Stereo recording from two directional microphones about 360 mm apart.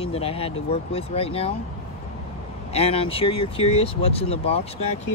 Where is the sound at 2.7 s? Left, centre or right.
Centre.